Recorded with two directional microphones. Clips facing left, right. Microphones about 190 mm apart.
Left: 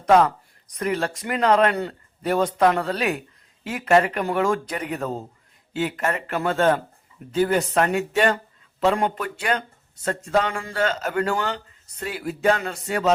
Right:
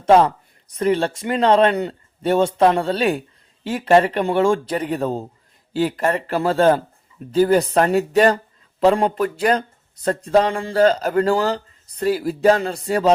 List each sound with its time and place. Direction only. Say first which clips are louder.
0.0 s speech: right 3 dB; 30° right (ahead or behind)